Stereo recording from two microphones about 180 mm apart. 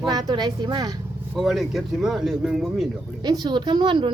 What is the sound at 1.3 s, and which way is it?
A man's voice, centre (ahead or behind).